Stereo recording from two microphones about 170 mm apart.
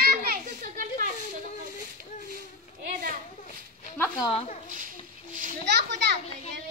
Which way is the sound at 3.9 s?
10° left (ahead or behind).